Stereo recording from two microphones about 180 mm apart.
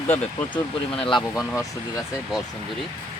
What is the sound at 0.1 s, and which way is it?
Speech, 30° left (ahead or behind).